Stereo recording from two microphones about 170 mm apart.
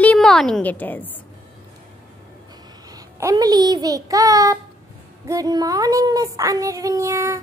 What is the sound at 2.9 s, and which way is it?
A child's voice, 20° right (ahead or behind).